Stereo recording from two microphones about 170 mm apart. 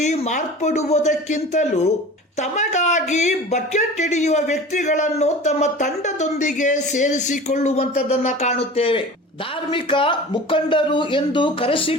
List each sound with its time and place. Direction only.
0.0 s speech: 45° left (ahead or behind)